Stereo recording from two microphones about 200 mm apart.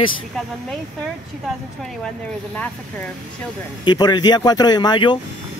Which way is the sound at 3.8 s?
20° left (ahead or behind).